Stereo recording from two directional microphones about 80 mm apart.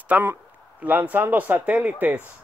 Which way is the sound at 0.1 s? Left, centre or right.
Right.